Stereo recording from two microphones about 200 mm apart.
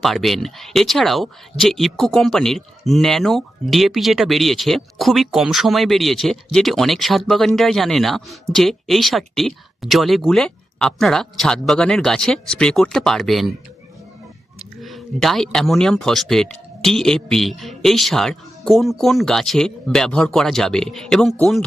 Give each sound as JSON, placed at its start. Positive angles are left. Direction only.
{"t": 0.0, "sound": "speech", "side_deg": 0}
{"t": 14.6, "sound": "speech", "side_deg": 0}